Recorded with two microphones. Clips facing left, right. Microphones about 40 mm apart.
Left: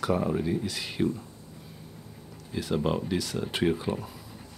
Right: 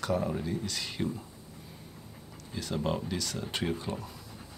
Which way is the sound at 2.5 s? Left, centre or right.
Centre.